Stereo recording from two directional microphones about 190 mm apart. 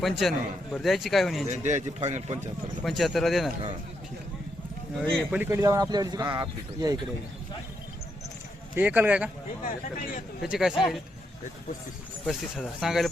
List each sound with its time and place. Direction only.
0.0 s a man's voice: centre (ahead or behind)
1.5 s speech: 40° right (ahead or behind)
2.8 s a man's voice: centre (ahead or behind)
4.9 s speech: 5° right (ahead or behind); by 7.0 s 20° right (ahead or behind)
8.7 s speech: 10° right (ahead or behind)
10.4 s a man's voice: 5° right (ahead or behind)
12.2 s a man's voice: centre (ahead or behind)